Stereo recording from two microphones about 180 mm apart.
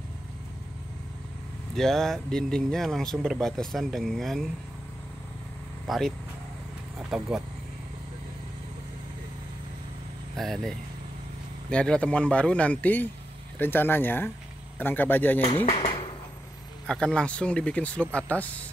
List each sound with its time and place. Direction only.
1.8 s speech: centre (ahead or behind)
5.9 s speech: centre (ahead or behind)
10.3 s speech: centre (ahead or behind)
15.7 s dishes: 30° left (ahead or behind)
16.8 s speech: 5° left (ahead or behind)